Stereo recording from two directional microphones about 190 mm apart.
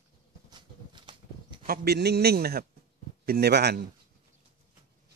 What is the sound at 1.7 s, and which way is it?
A man's voice, 60° right (ahead or behind).